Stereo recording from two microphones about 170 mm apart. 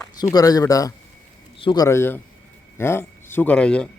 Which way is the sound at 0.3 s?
20° left (ahead or behind).